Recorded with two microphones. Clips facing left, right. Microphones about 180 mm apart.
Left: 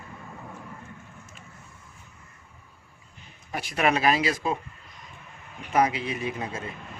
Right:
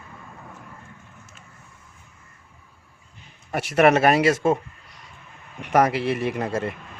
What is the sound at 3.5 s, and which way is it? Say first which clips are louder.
Speech: right 8 dB; 70° right (ahead or behind).